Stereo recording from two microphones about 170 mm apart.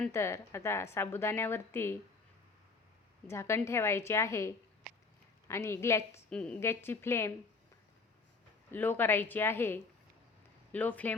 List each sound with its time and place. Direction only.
0.1 s a woman's voice: 15° left (ahead or behind)
3.2 s a woman's voice: 15° left (ahead or behind)
8.7 s a woman's voice: 10° left (ahead or behind)